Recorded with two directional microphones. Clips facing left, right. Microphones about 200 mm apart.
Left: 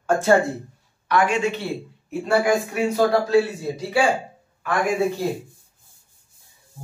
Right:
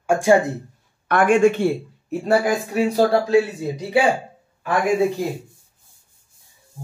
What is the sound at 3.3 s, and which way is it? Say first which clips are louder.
Speech: right 1 dB; 20° right (ahead or behind).